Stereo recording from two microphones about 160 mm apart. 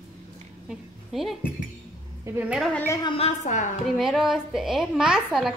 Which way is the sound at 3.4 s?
50° left (ahead or behind).